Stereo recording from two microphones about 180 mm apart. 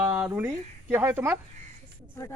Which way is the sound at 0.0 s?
5° right (ahead or behind).